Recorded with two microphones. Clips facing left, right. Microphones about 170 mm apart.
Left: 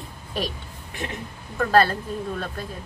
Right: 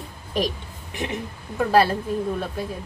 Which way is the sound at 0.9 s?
20° right (ahead or behind).